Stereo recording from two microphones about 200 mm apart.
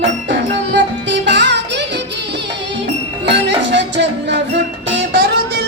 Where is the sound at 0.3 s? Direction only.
60° right (ahead or behind).